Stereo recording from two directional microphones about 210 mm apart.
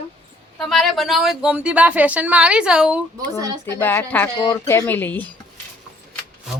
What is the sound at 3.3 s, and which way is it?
Speech, 15° right (ahead or behind).